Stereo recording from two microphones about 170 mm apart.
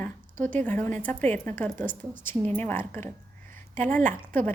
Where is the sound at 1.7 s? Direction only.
50° right (ahead or behind).